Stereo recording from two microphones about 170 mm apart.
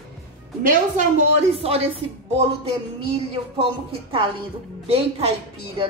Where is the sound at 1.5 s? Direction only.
35° right (ahead or behind).